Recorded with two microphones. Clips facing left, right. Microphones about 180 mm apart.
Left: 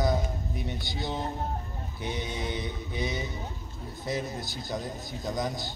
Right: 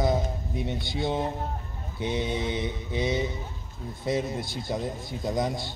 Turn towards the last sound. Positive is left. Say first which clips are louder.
# right 4 dB
turn(degrees=-25)  # may be behind; listen again after turning